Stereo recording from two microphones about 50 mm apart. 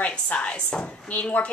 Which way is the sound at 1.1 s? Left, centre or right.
Left.